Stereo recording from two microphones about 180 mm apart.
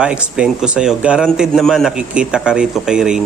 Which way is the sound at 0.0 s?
5° right (ahead or behind).